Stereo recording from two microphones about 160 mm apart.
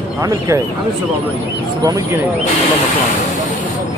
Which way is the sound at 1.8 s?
25° right (ahead or behind).